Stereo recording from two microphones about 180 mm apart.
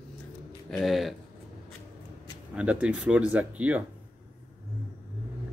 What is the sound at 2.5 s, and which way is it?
Speech, 5° right (ahead or behind).